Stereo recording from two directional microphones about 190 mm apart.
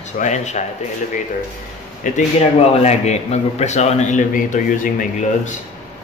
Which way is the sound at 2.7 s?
35° left (ahead or behind).